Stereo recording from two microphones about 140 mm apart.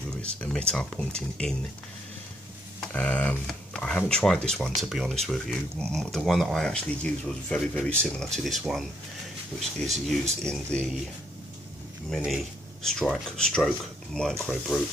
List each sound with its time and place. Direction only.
0.4 s speech: 5° left (ahead or behind)
2.8 s speech: 10° left (ahead or behind)
12.8 s speech: 5° left (ahead or behind)